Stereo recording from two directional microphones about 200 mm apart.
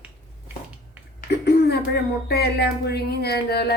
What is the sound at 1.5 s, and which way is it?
A woman's voice, 55° left (ahead or behind).